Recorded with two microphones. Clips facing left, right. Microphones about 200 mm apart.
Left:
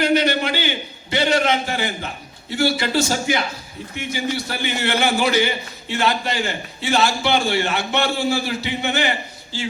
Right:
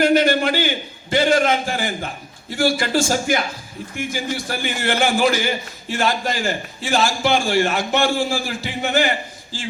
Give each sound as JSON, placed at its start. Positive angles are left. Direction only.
{"t": 0.0, "sound": "a man's voice", "side_deg": -50}